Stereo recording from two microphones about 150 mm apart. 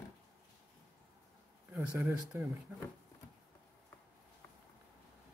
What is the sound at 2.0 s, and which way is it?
Speech, 20° right (ahead or behind).